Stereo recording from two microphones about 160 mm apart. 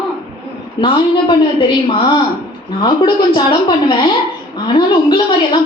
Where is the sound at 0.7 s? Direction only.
30° left (ahead or behind).